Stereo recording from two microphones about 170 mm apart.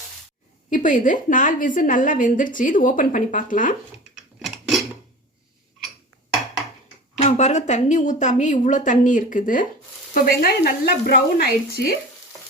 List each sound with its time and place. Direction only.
0.7 s a woman's voice: 50° left (ahead or behind)
4.4 s a sound: centre (ahead or behind)
7.2 s a woman's voice: 45° left (ahead or behind); by 11.9 s 65° left (ahead or behind)